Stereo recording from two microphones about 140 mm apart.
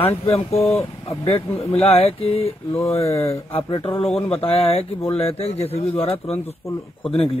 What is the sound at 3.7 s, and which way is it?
Speech, 40° left (ahead or behind).